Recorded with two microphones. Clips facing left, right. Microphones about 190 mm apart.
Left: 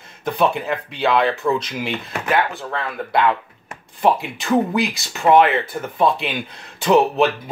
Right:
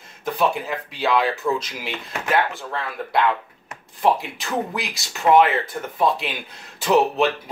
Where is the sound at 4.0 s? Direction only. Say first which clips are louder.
Left 2 dB; centre (ahead or behind).